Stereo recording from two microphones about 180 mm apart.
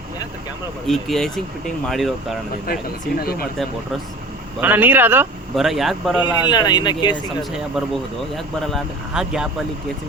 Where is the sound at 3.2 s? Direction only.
55° left (ahead or behind).